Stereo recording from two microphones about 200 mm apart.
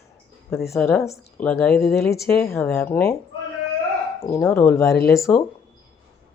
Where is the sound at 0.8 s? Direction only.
Centre (ahead or behind).